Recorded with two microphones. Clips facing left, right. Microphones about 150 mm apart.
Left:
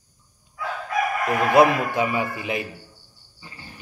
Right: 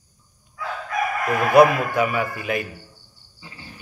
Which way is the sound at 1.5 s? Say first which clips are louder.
Right 3 dB; 25° left (ahead or behind).